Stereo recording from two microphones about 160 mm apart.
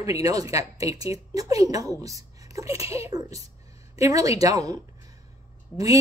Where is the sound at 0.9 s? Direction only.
40° left (ahead or behind).